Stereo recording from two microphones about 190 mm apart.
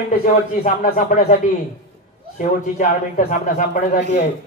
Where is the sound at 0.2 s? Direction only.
45° left (ahead or behind).